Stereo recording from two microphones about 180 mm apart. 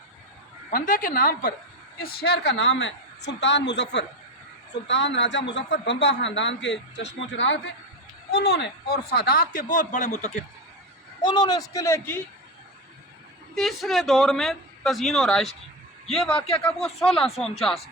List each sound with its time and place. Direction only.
0.7 s a woman's voice: 50° left (ahead or behind); by 7.7 s 90° left
8.3 s speech: 60° left (ahead or behind); by 10.4 s 40° left (ahead or behind)
11.2 s a man's voice: 25° left (ahead or behind)
13.6 s speech: centre (ahead or behind)